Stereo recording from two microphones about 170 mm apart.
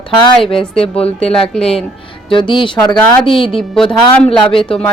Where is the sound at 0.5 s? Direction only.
5° left (ahead or behind).